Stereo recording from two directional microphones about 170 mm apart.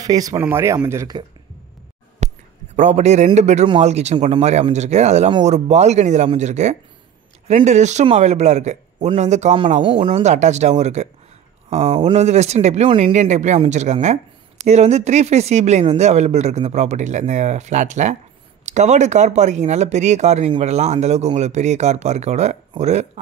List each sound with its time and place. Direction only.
0.0 s speech: 20° right (ahead or behind)
2.1 s a sound: 45° right (ahead or behind)
3.3 s speech: 40° right (ahead or behind)
9.8 s speech: 30° right (ahead or behind)